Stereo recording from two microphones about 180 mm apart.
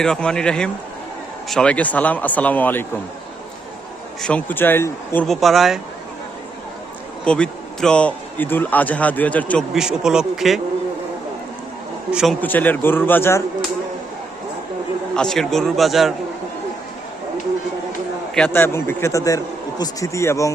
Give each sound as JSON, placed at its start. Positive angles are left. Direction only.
{"t": 0.0, "sound": "speech", "side_deg": 5}
{"t": 4.2, "sound": "speech", "side_deg": 5}
{"t": 7.3, "sound": "speech", "side_deg": 5}
{"t": 9.7, "sound": "speech", "side_deg": -5}
{"t": 12.1, "sound": "speech", "side_deg": 0}
{"t": 15.1, "sound": "speech", "side_deg": 5}
{"t": 18.3, "sound": "speech", "side_deg": 10}